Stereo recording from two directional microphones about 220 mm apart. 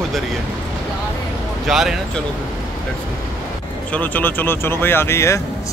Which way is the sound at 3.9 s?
5° left (ahead or behind).